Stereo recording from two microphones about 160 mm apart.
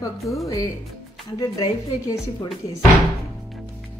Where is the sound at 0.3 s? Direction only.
20° left (ahead or behind).